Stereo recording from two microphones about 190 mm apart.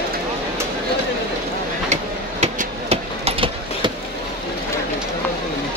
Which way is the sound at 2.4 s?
35° right (ahead or behind).